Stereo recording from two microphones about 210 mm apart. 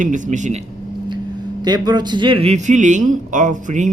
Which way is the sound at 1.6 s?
20° right (ahead or behind).